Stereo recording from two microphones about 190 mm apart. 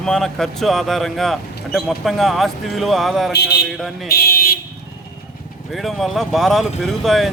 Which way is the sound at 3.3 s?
60° left (ahead or behind).